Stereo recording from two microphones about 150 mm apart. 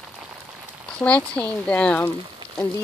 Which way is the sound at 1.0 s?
10° left (ahead or behind).